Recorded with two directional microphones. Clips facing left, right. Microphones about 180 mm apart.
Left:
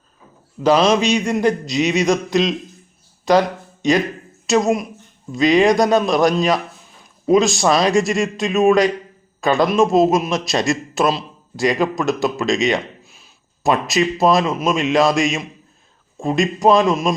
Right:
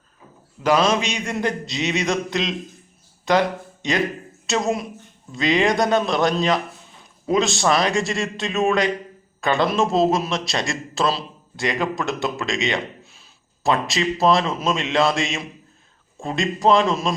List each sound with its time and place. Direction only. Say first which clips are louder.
0.7 s a man's voice: left 5 dB; 20° left (ahead or behind)
4.4 s a man's voice: left 6 dB; 15° left (ahead or behind)